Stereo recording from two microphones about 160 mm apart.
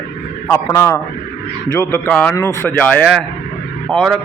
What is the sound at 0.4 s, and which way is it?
A man's voice, 15° left (ahead or behind).